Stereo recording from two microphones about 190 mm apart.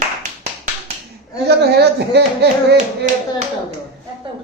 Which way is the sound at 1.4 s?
60° right (ahead or behind).